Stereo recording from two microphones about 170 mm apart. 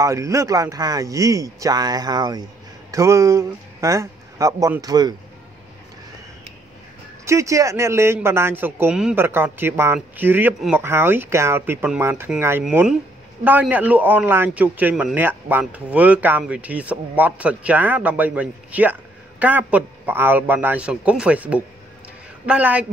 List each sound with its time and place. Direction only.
0.0 s a man's voice: 20° right (ahead or behind)
7.2 s speech: 20° right (ahead or behind)